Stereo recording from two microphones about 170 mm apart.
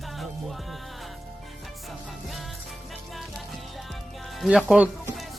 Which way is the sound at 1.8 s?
Centre (ahead or behind).